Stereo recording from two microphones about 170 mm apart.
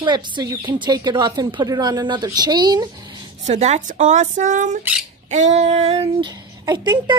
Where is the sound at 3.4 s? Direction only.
40° right (ahead or behind).